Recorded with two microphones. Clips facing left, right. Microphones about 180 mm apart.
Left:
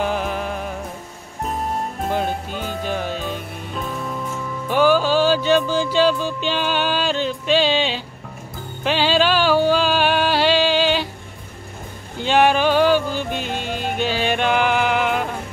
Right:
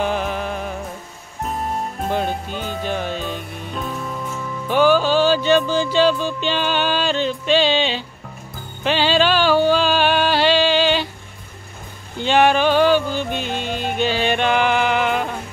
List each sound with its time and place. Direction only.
0.0 s music: 5° left (ahead or behind)
12.2 s music: 5° left (ahead or behind)